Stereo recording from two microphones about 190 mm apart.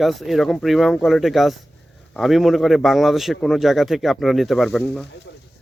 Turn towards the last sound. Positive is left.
turn(degrees=0)  # may be behind; listen again after turning